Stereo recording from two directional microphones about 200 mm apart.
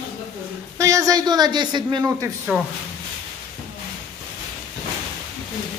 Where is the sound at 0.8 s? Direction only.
15° right (ahead or behind).